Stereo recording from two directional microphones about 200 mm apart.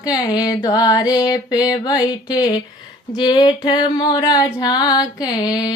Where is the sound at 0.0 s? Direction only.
20° left (ahead or behind).